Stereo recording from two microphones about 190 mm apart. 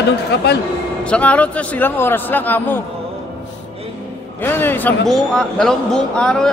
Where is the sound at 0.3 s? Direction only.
65° left (ahead or behind).